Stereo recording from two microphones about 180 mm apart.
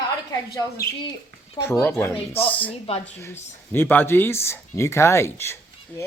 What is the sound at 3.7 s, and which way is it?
Speech, 10° left (ahead or behind).